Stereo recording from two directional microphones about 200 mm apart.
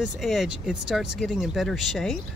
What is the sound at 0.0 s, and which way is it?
Speech, centre (ahead or behind).